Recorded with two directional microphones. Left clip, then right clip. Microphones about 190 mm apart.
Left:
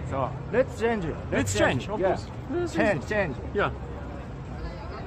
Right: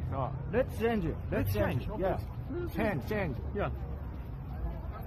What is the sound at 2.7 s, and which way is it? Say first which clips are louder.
Speech: left 8 dB; 15° right (ahead or behind).